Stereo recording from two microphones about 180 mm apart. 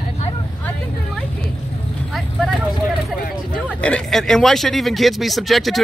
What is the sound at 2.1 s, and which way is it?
Vehicle, centre (ahead or behind).